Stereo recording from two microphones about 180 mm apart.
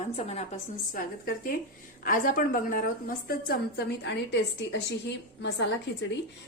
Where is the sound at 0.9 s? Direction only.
55° left (ahead or behind); by 5.6 s 75° left (ahead or behind).